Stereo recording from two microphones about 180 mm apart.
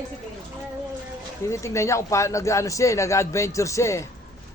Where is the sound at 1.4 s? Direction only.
15° left (ahead or behind).